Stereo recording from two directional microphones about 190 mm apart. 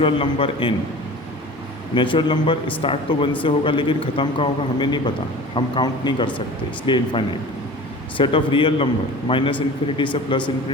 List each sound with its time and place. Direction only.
0.0 s a man's voice: 30° left (ahead or behind)
2.0 s a man's voice: 25° left (ahead or behind)